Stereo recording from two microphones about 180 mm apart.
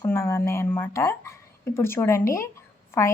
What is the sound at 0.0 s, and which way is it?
A woman's voice, 15° left (ahead or behind).